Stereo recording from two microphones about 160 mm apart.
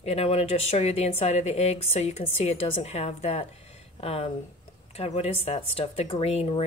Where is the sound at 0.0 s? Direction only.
40° left (ahead or behind).